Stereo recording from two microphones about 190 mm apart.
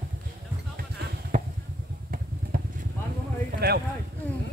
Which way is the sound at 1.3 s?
35° right (ahead or behind).